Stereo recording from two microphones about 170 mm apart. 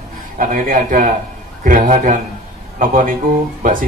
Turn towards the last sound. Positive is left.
turn(degrees=-55)  # may be behind; listen again after turning